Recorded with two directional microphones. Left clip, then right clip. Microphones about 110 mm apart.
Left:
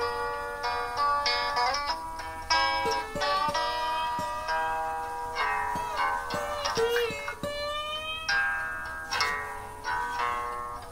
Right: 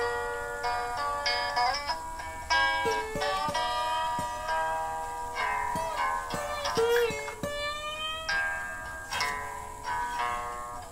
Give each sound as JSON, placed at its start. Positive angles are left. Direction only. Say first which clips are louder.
{"t": 0.7, "sound": "music", "louder": "left 4 dB", "side_deg": 40}
{"t": 8.3, "sound": "music", "louder": "left 4 dB", "side_deg": 40}